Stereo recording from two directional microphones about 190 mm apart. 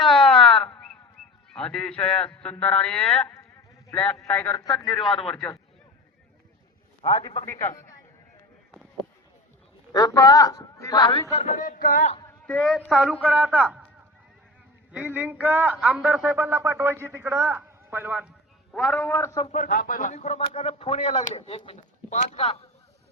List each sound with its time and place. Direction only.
0.0 s a sound: 5° left (ahead or behind)
1.5 s a man's voice: 5° left (ahead or behind)
7.0 s a man's voice: 20° left (ahead or behind)
7.4 s a man's voice: 15° left (ahead or behind)
9.9 s a man's voice: 20° left (ahead or behind)
11.4 s speech: 40° left (ahead or behind)
12.5 s a man's voice: centre (ahead or behind)
14.9 s a man's voice: 10° right (ahead or behind)
19.1 s a man's voice: 15° left (ahead or behind)
19.5 s speech: 45° left (ahead or behind)